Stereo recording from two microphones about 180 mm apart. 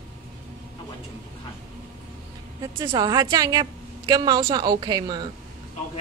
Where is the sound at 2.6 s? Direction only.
20° right (ahead or behind).